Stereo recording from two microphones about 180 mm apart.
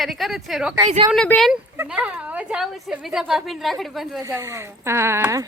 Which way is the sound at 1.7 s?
5° right (ahead or behind).